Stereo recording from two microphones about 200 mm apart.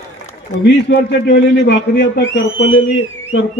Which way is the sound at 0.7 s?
55° left (ahead or behind).